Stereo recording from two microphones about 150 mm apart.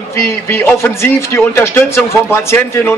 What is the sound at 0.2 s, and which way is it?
A man's voice, 15° left (ahead or behind).